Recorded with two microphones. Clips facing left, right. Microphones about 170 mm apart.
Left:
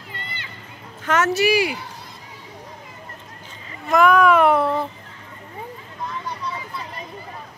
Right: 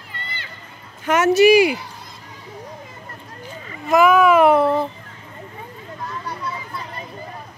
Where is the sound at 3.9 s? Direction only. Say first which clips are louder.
Right 2 dB; 5° right (ahead or behind).